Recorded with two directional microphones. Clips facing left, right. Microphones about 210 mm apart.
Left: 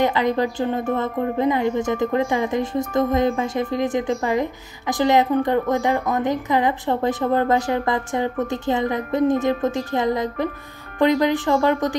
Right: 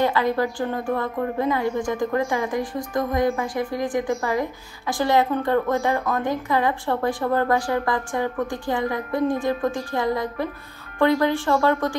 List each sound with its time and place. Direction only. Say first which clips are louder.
0.0 s a woman's voice: left 2 dB; 20° left (ahead or behind)